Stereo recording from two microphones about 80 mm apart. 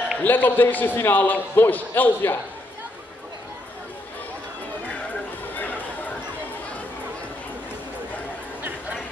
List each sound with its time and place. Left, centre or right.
0.2 s a man's voice: left
5.6 s chatter: left